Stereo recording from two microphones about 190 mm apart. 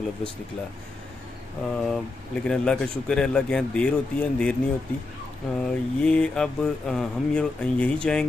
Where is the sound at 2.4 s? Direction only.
5° left (ahead or behind).